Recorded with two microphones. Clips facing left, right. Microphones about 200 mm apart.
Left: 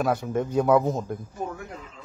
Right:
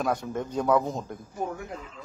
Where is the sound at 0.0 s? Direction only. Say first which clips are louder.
Left 4 dB; 5° left (ahead or behind).